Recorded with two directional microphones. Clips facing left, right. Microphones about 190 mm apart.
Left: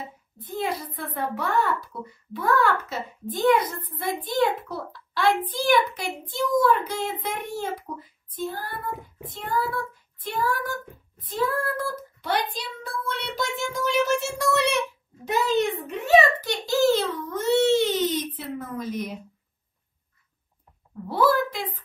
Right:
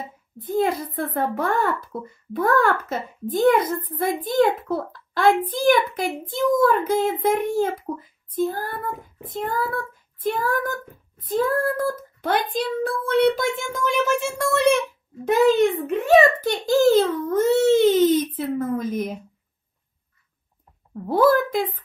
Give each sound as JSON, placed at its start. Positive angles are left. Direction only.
{"t": 0.5, "sound": "a child's voice", "side_deg": -50}
{"t": 21.1, "sound": "a child's voice", "side_deg": -50}